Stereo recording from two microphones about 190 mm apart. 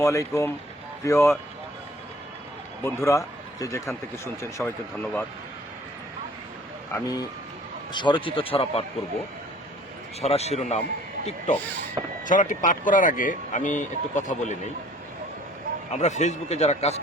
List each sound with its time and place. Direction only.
0.0 s speech: 15° left (ahead or behind)
2.8 s speech: 15° left (ahead or behind)
6.9 s speech: 20° left (ahead or behind)
10.2 s a man's voice: 35° left (ahead or behind)
15.9 s a man's voice: 35° left (ahead or behind)